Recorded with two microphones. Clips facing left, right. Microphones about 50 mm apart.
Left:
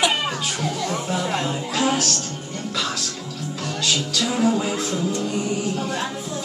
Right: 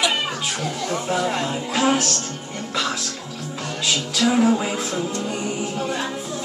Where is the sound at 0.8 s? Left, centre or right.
Centre.